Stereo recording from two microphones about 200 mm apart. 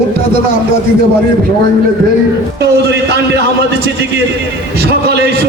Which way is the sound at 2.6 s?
55° right (ahead or behind).